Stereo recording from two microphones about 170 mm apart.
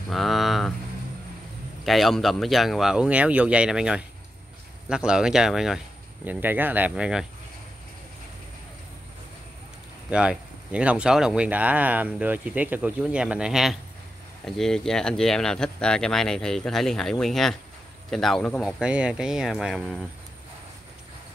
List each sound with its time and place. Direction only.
0.1 s vehicle: centre (ahead or behind)
1.9 s speech: centre (ahead or behind)
10.0 s speech: 5° right (ahead or behind)